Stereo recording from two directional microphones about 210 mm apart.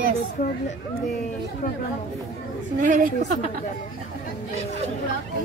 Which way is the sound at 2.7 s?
40° right (ahead or behind).